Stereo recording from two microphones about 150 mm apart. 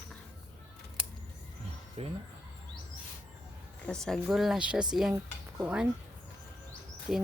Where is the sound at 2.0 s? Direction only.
40° right (ahead or behind).